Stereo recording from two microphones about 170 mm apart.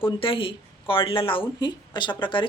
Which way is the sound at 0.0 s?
30° left (ahead or behind).